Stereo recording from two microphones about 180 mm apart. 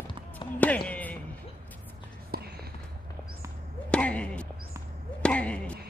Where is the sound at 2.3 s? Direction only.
60° right (ahead or behind).